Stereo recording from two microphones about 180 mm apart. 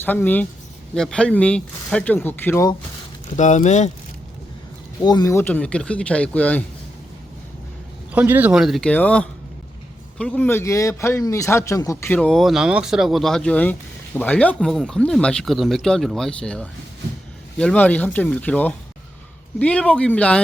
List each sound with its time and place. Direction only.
0.0 s speech: 10° left (ahead or behind)
3.3 s speech: 40° left (ahead or behind)
4.9 s speech: 20° left (ahead or behind)
8.1 s a man's voice: 10° right (ahead or behind); by 20.4 s 5° left (ahead or behind)